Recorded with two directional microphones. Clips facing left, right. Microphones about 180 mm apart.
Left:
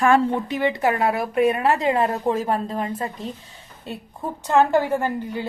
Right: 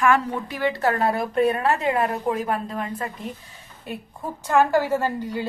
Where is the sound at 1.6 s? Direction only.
20° left (ahead or behind).